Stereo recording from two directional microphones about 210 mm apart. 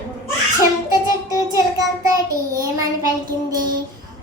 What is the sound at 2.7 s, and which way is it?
Speech, 15° right (ahead or behind).